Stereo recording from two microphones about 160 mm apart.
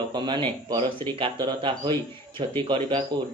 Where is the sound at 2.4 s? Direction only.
30° right (ahead or behind).